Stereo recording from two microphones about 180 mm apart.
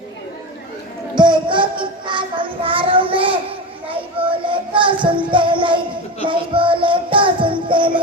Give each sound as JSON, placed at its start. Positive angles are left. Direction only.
{"t": 1.1, "sound": "music", "side_deg": -25}
{"t": 4.2, "sound": "child singing", "side_deg": -30}
{"t": 5.0, "sound": "music", "side_deg": -25}